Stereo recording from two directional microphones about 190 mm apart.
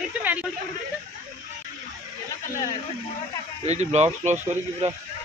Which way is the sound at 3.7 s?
35° right (ahead or behind).